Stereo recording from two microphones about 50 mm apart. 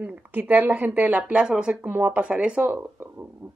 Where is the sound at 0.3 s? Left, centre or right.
Right.